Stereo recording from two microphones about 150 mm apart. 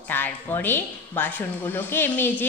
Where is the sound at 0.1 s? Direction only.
15° left (ahead or behind).